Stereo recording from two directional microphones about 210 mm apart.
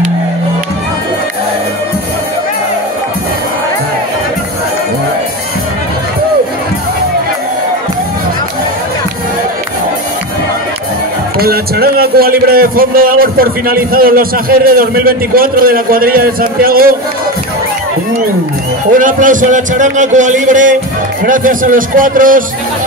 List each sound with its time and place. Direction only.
11.3 s a man's voice: 45° right (ahead or behind)
18.9 s a man's voice: 40° right (ahead or behind)